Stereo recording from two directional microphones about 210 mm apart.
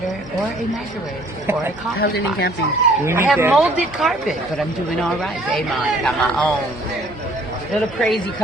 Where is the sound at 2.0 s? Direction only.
50° left (ahead or behind).